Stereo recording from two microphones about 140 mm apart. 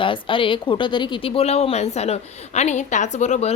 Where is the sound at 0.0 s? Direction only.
35° left (ahead or behind).